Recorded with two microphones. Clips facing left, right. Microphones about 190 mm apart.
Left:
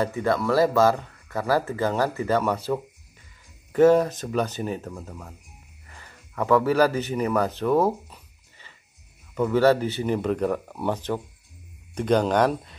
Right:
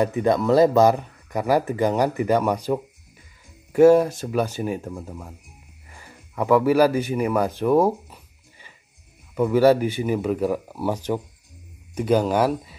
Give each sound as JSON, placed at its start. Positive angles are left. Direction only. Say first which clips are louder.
{"t": 0.0, "sound": "speech", "louder": "right 4 dB", "side_deg": -20}
{"t": 5.9, "sound": "a sound", "louder": "right 3 dB", "side_deg": -10}
{"t": 9.3, "sound": "speech", "louder": "right 3 dB", "side_deg": -10}